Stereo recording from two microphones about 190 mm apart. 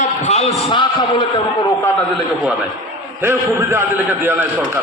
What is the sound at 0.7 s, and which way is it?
Speech, 25° left (ahead or behind).